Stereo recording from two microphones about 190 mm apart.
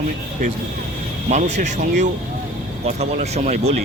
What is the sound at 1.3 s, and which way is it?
Speech, 40° right (ahead or behind).